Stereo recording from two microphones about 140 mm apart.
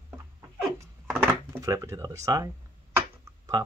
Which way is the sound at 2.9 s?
25° right (ahead or behind).